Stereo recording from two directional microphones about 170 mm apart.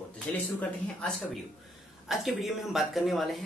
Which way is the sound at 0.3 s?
10° left (ahead or behind).